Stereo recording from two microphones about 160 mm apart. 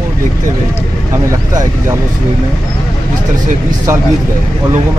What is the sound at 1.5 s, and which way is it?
Speech, 20° right (ahead or behind).